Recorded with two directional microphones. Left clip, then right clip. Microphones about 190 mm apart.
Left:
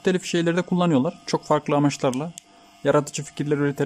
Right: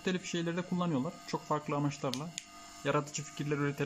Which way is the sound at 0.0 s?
45° left (ahead or behind).